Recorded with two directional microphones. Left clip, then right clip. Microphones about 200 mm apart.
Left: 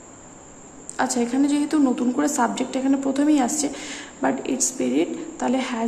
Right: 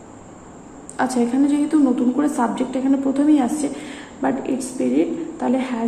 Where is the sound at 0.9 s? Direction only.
10° left (ahead or behind).